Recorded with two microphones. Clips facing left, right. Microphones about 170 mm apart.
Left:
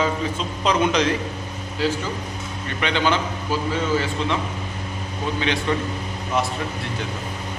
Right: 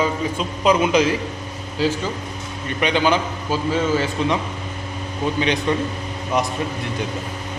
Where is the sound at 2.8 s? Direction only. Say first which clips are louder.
Right 3 dB; 15° right (ahead or behind).